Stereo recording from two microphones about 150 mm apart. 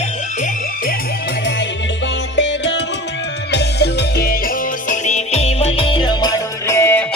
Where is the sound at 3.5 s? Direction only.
90° left; by 6.4 s 30° left (ahead or behind).